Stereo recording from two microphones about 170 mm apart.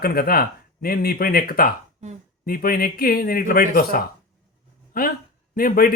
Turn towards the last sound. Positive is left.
turn(degrees=55)  # may be behind; listen again after turning